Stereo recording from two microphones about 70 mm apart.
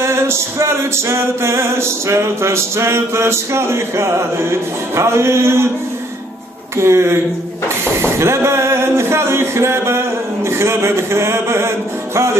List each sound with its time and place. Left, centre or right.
0.0 s music: right
6.8 s music: right
8.0 s a sound: right
10.6 s music: right